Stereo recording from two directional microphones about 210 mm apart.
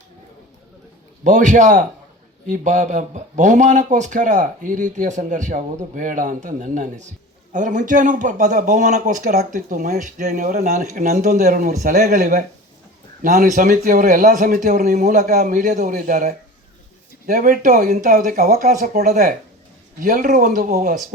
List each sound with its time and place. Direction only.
1.2 s speech: 35° right (ahead or behind)